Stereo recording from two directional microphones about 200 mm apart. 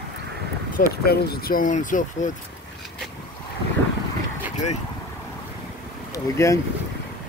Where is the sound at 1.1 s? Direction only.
50° left (ahead or behind).